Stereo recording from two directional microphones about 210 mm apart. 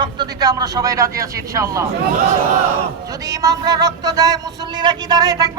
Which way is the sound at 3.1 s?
15° right (ahead or behind).